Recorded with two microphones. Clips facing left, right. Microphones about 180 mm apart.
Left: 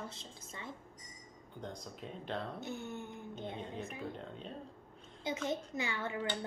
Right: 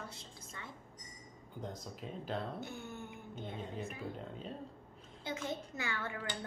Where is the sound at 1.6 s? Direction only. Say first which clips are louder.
Right 1 dB; 5° right (ahead or behind).